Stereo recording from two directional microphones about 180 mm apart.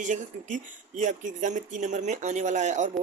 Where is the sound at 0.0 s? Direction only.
45° right (ahead or behind).